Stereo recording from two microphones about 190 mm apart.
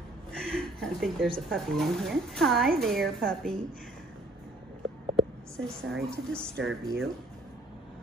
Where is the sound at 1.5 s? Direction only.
Centre (ahead or behind).